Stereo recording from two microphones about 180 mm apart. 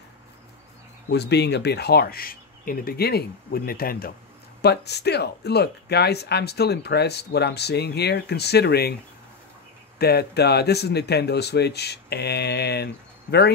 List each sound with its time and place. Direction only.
1.1 s speech: 65° left (ahead or behind)
4.6 s speech: 65° left (ahead or behind)
9.9 s speech: 60° left (ahead or behind)